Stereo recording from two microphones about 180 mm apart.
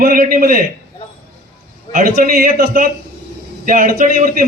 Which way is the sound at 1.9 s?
50° right (ahead or behind).